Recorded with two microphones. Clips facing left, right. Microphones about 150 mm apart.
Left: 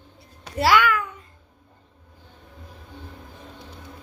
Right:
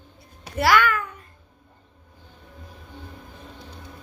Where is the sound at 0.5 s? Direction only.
25° left (ahead or behind).